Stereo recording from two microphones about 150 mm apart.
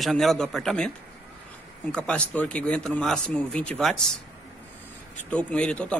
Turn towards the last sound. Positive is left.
turn(degrees=5)  # may be behind; listen again after turning